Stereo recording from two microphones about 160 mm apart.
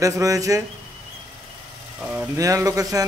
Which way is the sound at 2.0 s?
10° right (ahead or behind).